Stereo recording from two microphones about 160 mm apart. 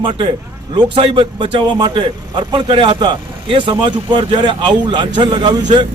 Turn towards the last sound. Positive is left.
turn(degrees=-25)  # may be behind; listen again after turning